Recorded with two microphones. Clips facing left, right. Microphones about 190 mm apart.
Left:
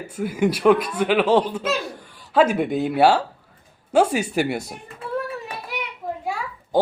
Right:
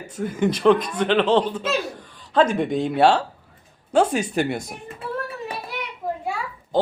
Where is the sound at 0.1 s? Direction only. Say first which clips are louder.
Left 1 dB; 10° left (ahead or behind).